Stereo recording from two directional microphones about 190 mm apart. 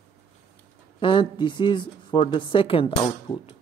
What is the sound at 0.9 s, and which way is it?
Speech, 25° left (ahead or behind).